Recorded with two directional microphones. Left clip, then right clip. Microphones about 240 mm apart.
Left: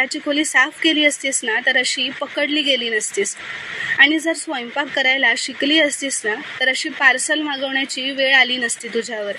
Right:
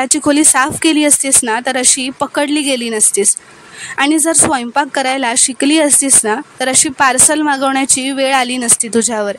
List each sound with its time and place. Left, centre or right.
0.0 s a woman's voice: right